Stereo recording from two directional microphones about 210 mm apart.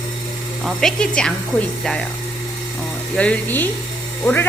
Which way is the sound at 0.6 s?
Centre (ahead or behind).